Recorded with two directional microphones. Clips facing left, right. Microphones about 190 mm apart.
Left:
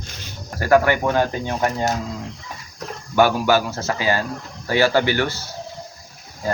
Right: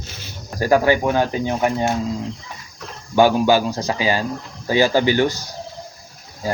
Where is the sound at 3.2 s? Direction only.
15° right (ahead or behind).